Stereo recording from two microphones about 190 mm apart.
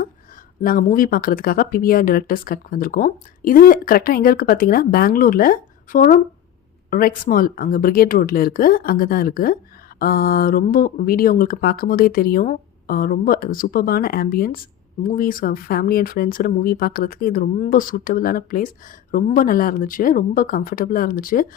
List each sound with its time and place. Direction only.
0.6 s speech: 45° left (ahead or behind)